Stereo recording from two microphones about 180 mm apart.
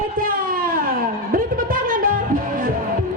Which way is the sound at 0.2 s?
50° right (ahead or behind).